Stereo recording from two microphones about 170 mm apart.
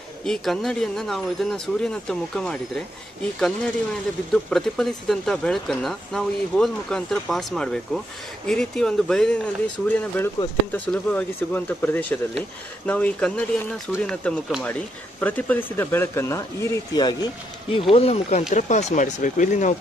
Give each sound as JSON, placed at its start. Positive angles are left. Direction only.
{"t": 0.2, "sound": "speech", "side_deg": 0}
{"t": 4.3, "sound": "speech", "side_deg": 0}